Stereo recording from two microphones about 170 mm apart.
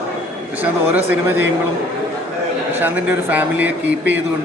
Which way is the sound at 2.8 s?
10° right (ahead or behind).